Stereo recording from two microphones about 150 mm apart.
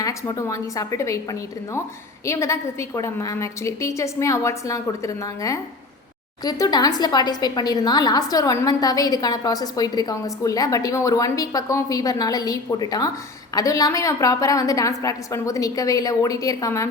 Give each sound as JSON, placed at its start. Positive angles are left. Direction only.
{"t": 0.0, "sound": "a woman's voice", "side_deg": 20}